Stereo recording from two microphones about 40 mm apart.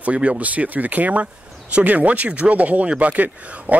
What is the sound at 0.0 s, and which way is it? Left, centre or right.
Speech, right.